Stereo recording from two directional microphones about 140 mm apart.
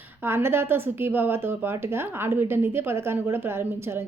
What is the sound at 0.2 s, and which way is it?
Speech, 15° right (ahead or behind).